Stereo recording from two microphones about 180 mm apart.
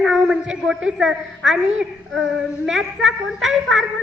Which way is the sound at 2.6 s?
Centre (ahead or behind).